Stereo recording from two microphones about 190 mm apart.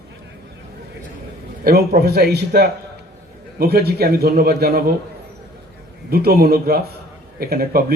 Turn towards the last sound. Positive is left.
turn(degrees=-55)  # may be behind; listen again after turning